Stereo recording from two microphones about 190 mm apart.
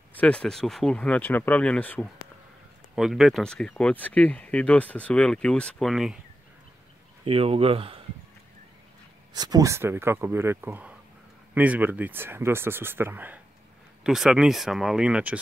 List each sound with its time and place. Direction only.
0.1 s speech: 5° left (ahead or behind)
7.2 s speech: 30° right (ahead or behind)
9.3 s speech: 20° right (ahead or behind); by 15.3 s 5° right (ahead or behind)